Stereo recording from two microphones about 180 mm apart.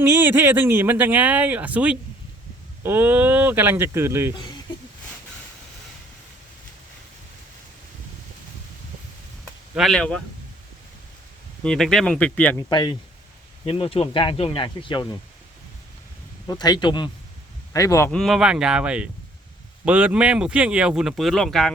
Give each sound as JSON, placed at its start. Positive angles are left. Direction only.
{"t": 0.0, "sound": "a man's voice", "side_deg": -10}
{"t": 9.7, "sound": "speech", "side_deg": 0}
{"t": 11.6, "sound": "speech", "side_deg": 5}
{"t": 12.5, "sound": "speech", "side_deg": 20}
{"t": 13.7, "sound": "speech", "side_deg": 30}
{"t": 16.5, "sound": "speech", "side_deg": 20}
{"t": 18.1, "sound": "speech", "side_deg": 0}